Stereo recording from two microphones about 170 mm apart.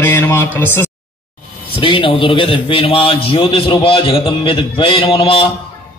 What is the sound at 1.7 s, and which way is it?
Speech, 30° left (ahead or behind).